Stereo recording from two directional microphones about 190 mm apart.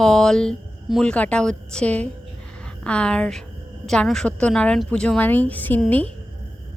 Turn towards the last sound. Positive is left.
turn(degrees=10)  # may be behind; listen again after turning